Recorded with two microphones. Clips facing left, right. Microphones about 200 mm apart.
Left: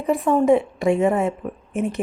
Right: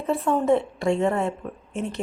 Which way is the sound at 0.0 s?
15° left (ahead or behind).